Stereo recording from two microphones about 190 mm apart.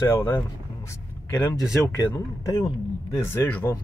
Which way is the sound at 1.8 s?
15° left (ahead or behind).